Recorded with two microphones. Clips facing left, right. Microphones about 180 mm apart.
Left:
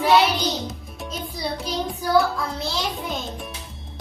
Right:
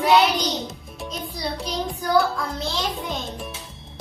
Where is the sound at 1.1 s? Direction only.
Centre (ahead or behind).